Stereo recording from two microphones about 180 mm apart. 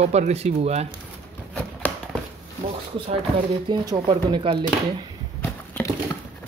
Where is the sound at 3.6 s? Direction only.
25° right (ahead or behind).